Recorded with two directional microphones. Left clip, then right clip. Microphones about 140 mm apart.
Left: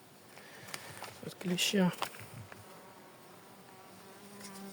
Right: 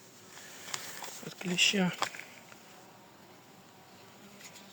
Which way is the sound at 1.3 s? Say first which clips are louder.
Right 5 dB; 25° left (ahead or behind).